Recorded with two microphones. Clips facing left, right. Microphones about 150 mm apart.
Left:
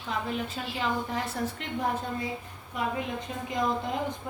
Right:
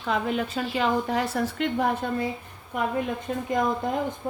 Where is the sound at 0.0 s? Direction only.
85° right.